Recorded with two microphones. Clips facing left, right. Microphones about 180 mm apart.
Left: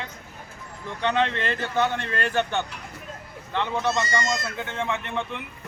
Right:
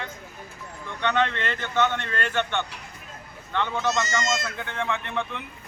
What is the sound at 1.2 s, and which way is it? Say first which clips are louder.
Speech: left 1 dB; 35° left (ahead or behind).